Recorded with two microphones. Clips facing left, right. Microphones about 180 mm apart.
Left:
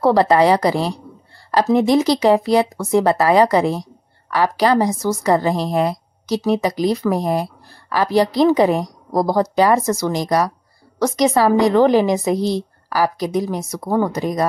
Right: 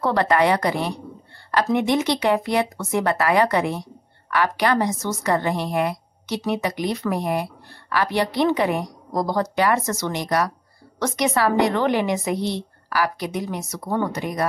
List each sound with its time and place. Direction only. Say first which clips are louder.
0.0 s a woman's voice: left 6 dB; 35° left (ahead or behind)